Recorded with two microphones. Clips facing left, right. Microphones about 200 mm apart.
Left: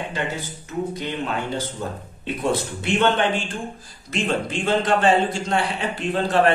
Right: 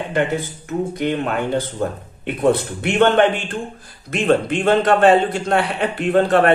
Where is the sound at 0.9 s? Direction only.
55° right (ahead or behind).